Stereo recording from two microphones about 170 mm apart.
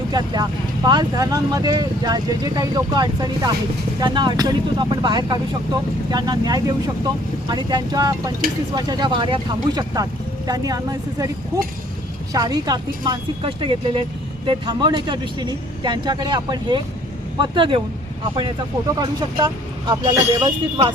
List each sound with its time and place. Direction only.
0.1 s speech: 25° right (ahead or behind)
18.9 s speech: 25° right (ahead or behind)